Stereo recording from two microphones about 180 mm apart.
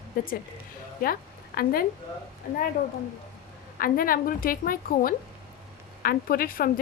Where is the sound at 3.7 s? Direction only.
50° left (ahead or behind).